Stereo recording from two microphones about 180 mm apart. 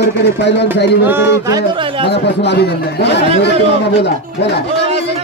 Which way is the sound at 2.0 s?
70° left (ahead or behind).